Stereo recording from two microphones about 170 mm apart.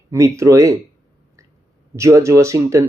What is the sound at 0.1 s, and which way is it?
Speech, 15° right (ahead or behind).